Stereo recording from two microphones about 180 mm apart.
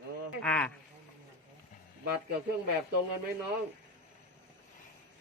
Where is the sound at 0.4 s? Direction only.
5° left (ahead or behind).